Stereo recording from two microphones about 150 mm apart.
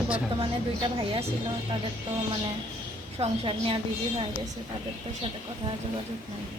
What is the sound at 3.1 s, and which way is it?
Speech, 40° right (ahead or behind).